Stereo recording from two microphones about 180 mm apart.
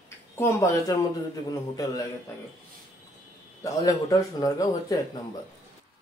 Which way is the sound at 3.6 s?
20° left (ahead or behind).